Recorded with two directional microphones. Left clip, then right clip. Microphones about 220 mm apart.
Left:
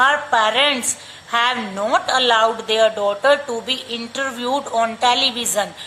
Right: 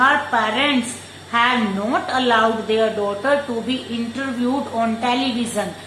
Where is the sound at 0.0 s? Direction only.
50° left (ahead or behind).